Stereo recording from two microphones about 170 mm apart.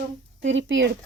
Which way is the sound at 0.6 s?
90° right.